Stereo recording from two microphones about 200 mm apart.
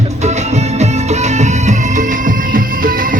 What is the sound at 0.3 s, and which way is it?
Music, 35° right (ahead or behind).